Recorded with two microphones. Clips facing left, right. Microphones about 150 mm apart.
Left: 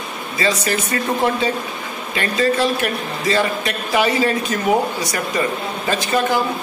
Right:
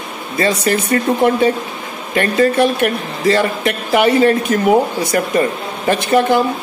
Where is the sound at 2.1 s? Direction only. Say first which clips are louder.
Right 5 dB; 55° right (ahead or behind).